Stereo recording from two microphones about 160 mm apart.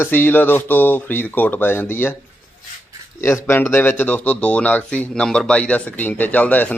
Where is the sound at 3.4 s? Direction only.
15° left (ahead or behind).